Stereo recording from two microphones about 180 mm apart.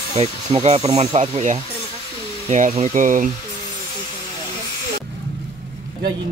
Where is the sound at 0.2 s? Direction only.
35° right (ahead or behind).